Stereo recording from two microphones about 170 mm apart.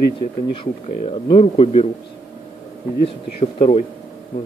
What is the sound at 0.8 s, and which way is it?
Speech, 35° left (ahead or behind).